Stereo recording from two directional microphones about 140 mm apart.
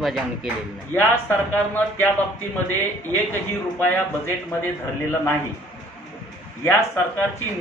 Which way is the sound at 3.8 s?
15° left (ahead or behind).